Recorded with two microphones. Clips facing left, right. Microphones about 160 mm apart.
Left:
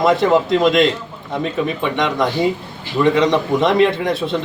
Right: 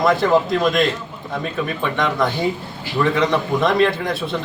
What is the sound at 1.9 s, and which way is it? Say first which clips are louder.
A man's voice: left 1 dB; 20° left (ahead or behind).